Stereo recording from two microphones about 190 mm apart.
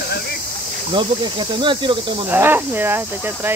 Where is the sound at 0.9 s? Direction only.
25° right (ahead or behind).